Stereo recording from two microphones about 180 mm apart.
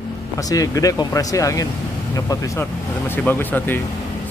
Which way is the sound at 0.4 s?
20° left (ahead or behind).